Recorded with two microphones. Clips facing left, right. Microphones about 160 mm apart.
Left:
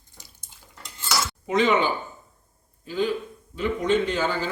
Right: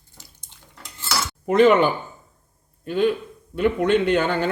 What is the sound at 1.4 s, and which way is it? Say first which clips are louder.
A man's voice: right 6 dB; 55° right (ahead or behind).